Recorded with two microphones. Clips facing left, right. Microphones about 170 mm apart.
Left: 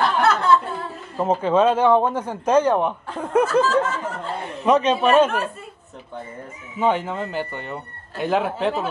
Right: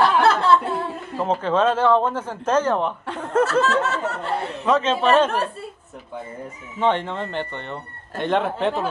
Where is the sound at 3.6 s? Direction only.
75° right (ahead or behind).